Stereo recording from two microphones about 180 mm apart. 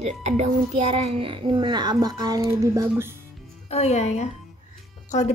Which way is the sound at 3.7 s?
35° left (ahead or behind).